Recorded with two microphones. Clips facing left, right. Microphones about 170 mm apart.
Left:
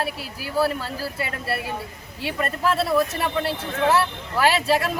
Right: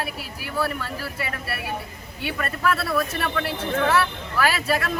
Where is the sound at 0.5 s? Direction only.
30° left (ahead or behind).